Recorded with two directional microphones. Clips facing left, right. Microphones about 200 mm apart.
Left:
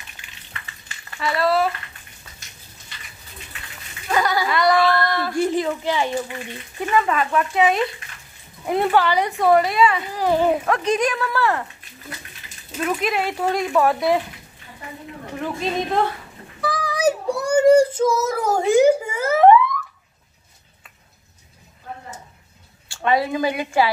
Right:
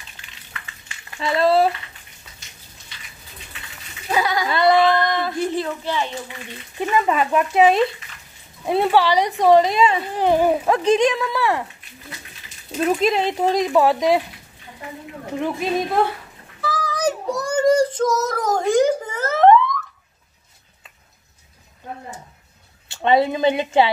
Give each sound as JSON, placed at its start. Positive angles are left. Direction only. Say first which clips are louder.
{"t": 1.2, "sound": "speech", "louder": "right 3 dB", "side_deg": -25}
{"t": 4.1, "sound": "bleat", "louder": "even", "side_deg": -5}
{"t": 4.5, "sound": "speech", "louder": "right 4 dB", "side_deg": -25}
{"t": 5.4, "sound": "speech", "louder": "left 2 dB", "side_deg": 15}
{"t": 7.2, "sound": "speech", "louder": "right 2 dB", "side_deg": -15}
{"t": 7.5, "sound": "speech", "louder": "right 4 dB", "side_deg": -30}
{"t": 8.6, "sound": "speech", "louder": "right 1 dB", "side_deg": -15}
{"t": 10.3, "sound": "speech", "louder": "right 1 dB", "side_deg": -15}
{"t": 10.6, "sound": "speech", "louder": "right 4 dB", "side_deg": -30}
{"t": 12.7, "sound": "speech", "louder": "right 4 dB", "side_deg": -30}
{"t": 15.3, "sound": "speech", "louder": "right 2 dB", "side_deg": -15}
{"t": 16.6, "sound": "child singing", "louder": "left 2 dB", "side_deg": 10}
{"t": 22.8, "sound": "speech", "louder": "right 3 dB", "side_deg": -25}